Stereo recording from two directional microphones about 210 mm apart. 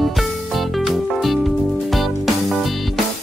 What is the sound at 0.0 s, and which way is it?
Music, centre (ahead or behind).